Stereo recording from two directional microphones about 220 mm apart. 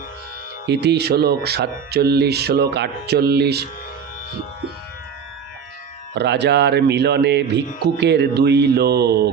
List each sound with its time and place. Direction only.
0.6 s speech: 50° right (ahead or behind)
6.1 s speech: 50° right (ahead or behind)